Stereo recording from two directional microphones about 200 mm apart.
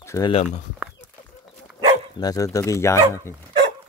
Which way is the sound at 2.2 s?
15° left (ahead or behind).